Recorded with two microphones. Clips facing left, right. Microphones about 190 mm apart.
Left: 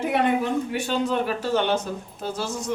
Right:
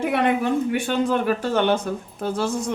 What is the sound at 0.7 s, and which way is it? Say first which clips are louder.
Speech: right 3 dB; 50° right (ahead or behind).